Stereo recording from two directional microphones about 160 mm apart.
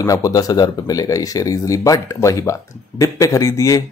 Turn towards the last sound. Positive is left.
turn(degrees=20)  # may be behind; listen again after turning